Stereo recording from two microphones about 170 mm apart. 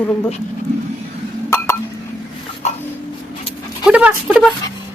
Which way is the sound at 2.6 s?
40° left (ahead or behind).